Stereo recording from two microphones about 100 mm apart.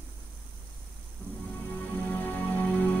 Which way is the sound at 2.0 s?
15° left (ahead or behind).